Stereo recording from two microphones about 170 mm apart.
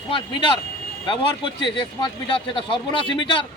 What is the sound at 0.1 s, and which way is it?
Speech, 30° left (ahead or behind).